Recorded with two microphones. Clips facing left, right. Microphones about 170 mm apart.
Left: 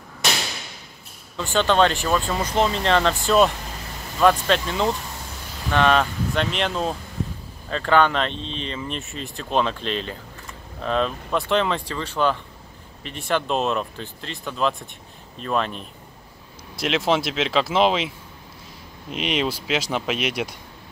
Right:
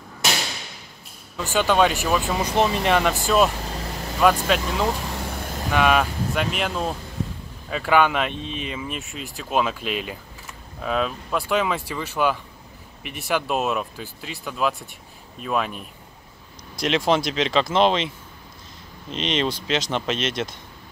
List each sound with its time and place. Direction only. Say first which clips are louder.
1.3 s speech: even; 5° right (ahead or behind)
5.1 s vehicle: right 7 dB; 60° right (ahead or behind)
5.7 s speech: left 1 dB; 10° right (ahead or behind)
16.8 s speech: right 1 dB; centre (ahead or behind)
19.1 s speech: even; 5° left (ahead or behind)